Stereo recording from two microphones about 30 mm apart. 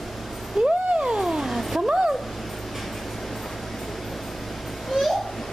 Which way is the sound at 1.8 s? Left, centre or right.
Right.